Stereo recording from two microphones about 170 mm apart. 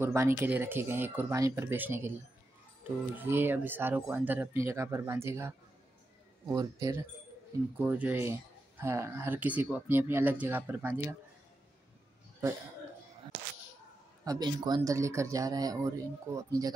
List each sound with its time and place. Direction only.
0.0 s speech: 15° right (ahead or behind)
14.2 s speech: 25° right (ahead or behind)